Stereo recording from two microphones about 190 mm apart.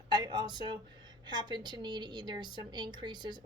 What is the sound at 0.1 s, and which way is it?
A woman's voice, 20° right (ahead or behind).